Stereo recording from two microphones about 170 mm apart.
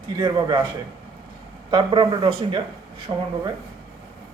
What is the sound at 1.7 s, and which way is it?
Speech, 30° right (ahead or behind).